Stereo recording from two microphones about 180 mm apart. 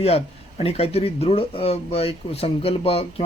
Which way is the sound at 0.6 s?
35° left (ahead or behind).